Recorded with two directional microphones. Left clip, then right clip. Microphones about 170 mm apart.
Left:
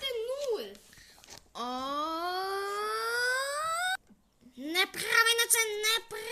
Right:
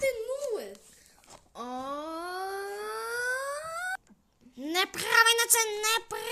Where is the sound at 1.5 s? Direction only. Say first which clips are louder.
Left 2 dB; 10° left (ahead or behind).